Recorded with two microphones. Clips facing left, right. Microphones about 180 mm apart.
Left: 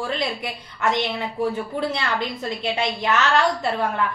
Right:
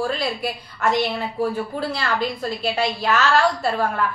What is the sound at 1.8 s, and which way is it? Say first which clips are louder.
A woman's voice: right 1 dB; 20° left (ahead or behind).